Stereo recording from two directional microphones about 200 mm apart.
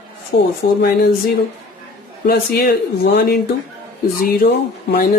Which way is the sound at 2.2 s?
50° left (ahead or behind).